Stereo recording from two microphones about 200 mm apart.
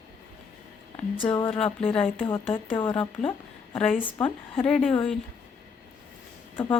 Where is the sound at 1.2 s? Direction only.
25° left (ahead or behind).